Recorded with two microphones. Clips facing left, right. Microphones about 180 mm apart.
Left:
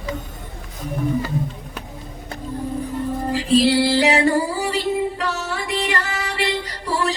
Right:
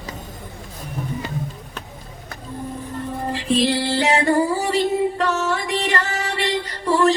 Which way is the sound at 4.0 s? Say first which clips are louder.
Left 1 dB; 40° right (ahead or behind).